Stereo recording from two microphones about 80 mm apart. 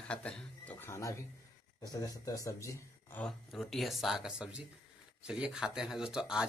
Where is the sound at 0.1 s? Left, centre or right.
Centre.